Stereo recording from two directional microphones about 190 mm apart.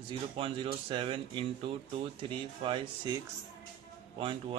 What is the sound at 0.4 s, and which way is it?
Speech, 25° right (ahead or behind).